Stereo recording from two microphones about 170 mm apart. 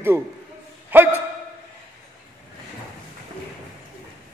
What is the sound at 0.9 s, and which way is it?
Speech, 10° right (ahead or behind).